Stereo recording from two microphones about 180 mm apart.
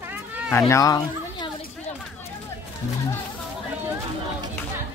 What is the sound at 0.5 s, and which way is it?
Speech, 15° left (ahead or behind).